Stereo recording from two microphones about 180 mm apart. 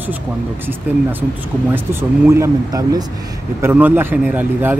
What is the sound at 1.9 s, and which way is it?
Speech, 15° right (ahead or behind).